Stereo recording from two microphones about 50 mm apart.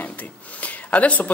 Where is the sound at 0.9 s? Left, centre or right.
Left.